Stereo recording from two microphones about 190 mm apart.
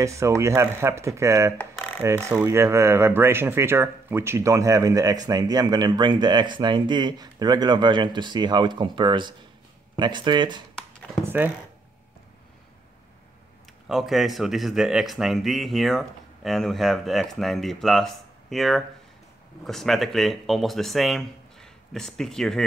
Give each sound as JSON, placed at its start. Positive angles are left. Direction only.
{"t": 0.0, "sound": "speech", "side_deg": -15}
{"t": 11.2, "sound": "speech", "side_deg": -10}
{"t": 13.8, "sound": "speech", "side_deg": 0}